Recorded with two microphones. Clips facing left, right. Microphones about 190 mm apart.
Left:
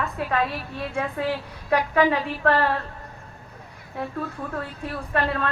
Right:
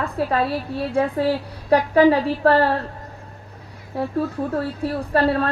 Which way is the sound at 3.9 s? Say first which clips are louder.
Right 7 dB; 35° right (ahead or behind).